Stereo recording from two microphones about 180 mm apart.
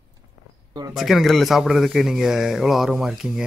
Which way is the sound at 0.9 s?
Centre (ahead or behind).